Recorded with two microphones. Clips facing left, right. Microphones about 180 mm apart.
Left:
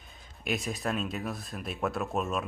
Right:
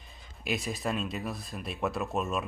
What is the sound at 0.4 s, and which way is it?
Speech, centre (ahead or behind).